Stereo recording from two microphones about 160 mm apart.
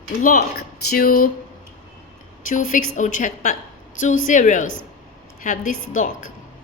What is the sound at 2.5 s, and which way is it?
A woman's voice, 55° left (ahead or behind).